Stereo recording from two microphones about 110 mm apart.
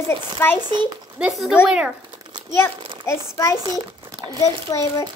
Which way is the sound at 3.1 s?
30° left (ahead or behind).